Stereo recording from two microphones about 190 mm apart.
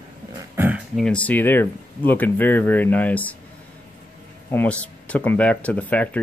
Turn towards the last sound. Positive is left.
turn(degrees=5)  # may be behind; listen again after turning